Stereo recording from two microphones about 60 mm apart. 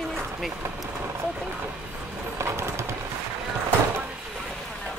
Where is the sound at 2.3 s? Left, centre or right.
Right.